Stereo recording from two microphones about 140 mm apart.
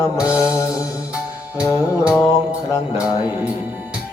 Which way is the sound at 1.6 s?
20° left (ahead or behind).